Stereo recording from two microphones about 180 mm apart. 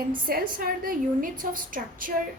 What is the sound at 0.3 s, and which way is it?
A woman's voice, 55° right (ahead or behind).